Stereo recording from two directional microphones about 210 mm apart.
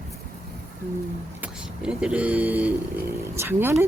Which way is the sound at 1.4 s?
5° right (ahead or behind).